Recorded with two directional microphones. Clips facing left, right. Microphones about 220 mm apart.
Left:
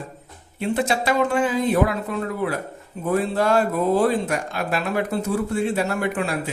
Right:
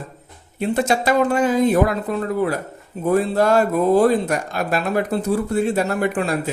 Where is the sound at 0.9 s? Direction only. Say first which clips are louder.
Right 5 dB; 40° right (ahead or behind).